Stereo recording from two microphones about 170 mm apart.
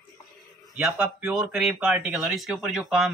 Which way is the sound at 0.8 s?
10° right (ahead or behind).